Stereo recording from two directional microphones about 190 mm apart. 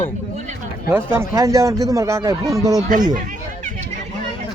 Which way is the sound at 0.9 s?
10° right (ahead or behind).